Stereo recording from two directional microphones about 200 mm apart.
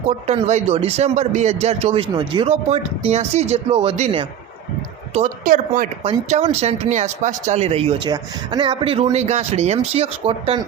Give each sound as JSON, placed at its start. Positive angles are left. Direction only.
{"t": 0.3, "sound": "speech", "side_deg": -35}